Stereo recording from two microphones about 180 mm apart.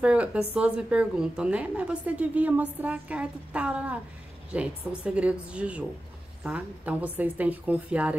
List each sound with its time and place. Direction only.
0.0 s speech: 5° right (ahead or behind)